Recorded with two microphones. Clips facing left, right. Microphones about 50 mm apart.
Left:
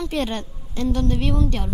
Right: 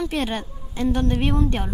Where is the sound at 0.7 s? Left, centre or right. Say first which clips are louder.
Right 1 dB; right.